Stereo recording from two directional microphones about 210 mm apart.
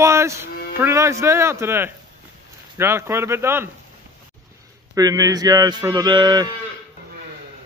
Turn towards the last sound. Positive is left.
turn(degrees=-20)  # may be behind; listen again after turning